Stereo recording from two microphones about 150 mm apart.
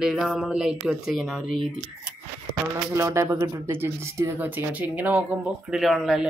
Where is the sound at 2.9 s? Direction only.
20° right (ahead or behind).